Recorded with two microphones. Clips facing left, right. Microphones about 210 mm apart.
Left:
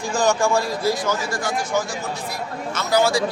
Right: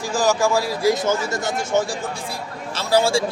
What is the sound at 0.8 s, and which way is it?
A man's voice, 20° right (ahead or behind).